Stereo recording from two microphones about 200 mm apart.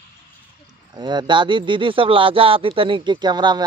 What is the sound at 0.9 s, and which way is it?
Speech, 20° right (ahead or behind).